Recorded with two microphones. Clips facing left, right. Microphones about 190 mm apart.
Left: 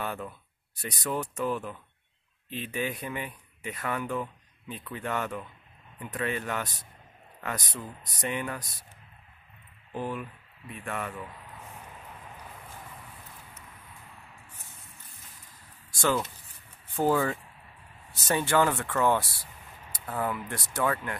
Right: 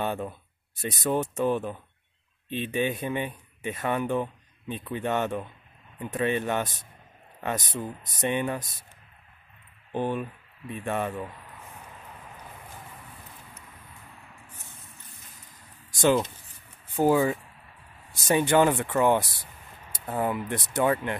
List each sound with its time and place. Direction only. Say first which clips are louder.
0.0 s speech: right 5 dB; 25° right (ahead or behind)
9.9 s speech: right 5 dB; 30° right (ahead or behind)
16.0 s speech: right 5 dB; 20° right (ahead or behind)